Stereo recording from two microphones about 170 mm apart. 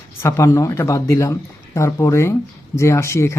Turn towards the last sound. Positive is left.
turn(degrees=15)  # may be behind; listen again after turning